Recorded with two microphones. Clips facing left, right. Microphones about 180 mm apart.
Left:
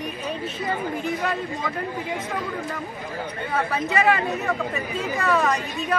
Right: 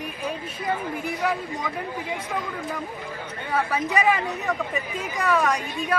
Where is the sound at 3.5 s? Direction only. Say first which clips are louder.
Even; 15° right (ahead or behind).